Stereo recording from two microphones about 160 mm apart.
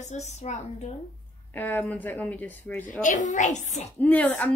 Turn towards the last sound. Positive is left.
turn(degrees=10)  # may be behind; listen again after turning